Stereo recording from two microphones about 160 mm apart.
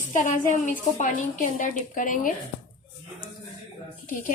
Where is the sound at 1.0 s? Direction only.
55° left (ahead or behind).